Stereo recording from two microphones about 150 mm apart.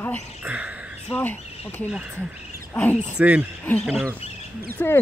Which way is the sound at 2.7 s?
10° left (ahead or behind).